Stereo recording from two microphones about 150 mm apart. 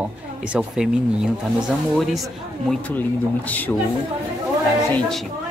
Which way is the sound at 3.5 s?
10° left (ahead or behind).